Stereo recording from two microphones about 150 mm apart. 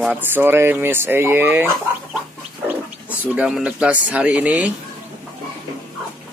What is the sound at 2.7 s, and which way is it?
Speech, 10° right (ahead or behind).